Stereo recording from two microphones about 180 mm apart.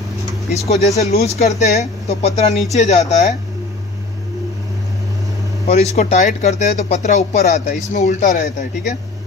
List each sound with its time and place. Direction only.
0.5 s speech: 40° left (ahead or behind)
5.7 s speech: 35° left (ahead or behind)